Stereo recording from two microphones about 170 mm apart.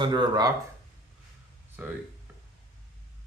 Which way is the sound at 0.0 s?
25° right (ahead or behind).